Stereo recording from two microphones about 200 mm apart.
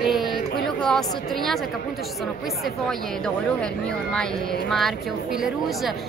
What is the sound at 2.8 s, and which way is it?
Speech, 5° left (ahead or behind).